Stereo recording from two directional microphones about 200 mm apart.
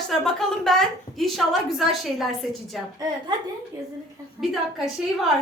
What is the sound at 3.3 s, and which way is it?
Speech, 20° right (ahead or behind).